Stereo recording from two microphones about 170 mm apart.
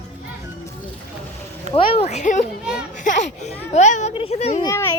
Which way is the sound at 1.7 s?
40° left (ahead or behind).